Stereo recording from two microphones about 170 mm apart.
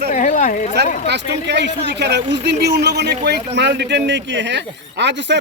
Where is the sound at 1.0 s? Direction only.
90° right.